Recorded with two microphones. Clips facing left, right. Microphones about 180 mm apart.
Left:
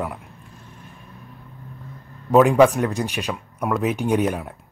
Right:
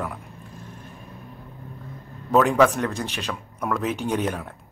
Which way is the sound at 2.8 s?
15° left (ahead or behind).